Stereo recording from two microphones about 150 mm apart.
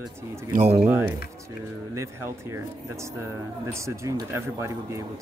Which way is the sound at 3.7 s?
20° right (ahead or behind).